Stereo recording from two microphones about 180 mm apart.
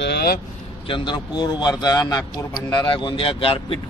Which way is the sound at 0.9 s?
25° left (ahead or behind).